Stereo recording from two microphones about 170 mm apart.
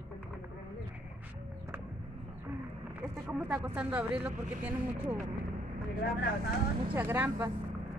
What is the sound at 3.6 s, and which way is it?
Speech, 10° right (ahead or behind).